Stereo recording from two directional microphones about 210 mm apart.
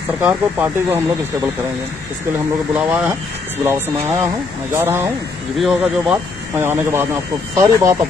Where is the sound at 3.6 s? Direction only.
10° right (ahead or behind).